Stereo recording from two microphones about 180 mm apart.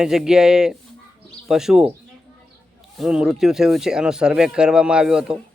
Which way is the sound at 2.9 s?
5° right (ahead or behind).